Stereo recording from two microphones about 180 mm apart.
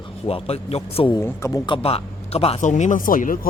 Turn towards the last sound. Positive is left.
turn(degrees=50)  # may be behind; listen again after turning